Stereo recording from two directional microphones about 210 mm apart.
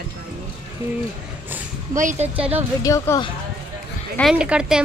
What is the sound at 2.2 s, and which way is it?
Speech, 30° right (ahead or behind).